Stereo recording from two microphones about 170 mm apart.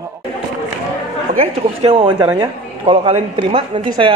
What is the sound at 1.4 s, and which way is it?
A man's voice, 35° right (ahead or behind).